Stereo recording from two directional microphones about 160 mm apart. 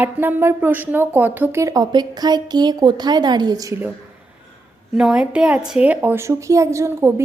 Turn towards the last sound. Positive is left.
turn(degrees=-15)  # may be behind; listen again after turning